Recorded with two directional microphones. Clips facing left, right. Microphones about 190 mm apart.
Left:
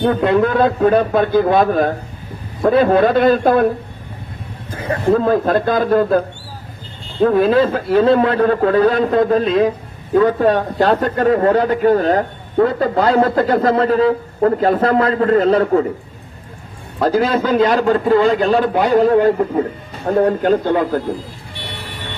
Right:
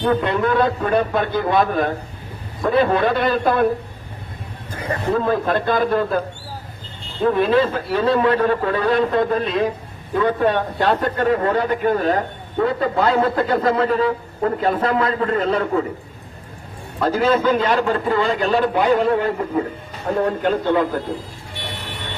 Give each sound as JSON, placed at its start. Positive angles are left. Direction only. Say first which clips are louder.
{"t": 0.0, "sound": "a man's voice", "louder": "left 4 dB", "side_deg": 45}
{"t": 5.1, "sound": "a man's voice", "louder": "left 4 dB", "side_deg": 45}
{"t": 17.0, "sound": "a man's voice", "louder": "left 2 dB", "side_deg": 40}